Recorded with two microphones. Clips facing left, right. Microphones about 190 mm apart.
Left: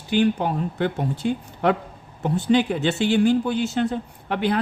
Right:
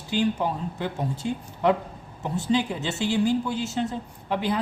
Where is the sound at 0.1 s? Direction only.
65° left (ahead or behind).